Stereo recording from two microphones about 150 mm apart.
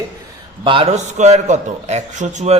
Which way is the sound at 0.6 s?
35° right (ahead or behind).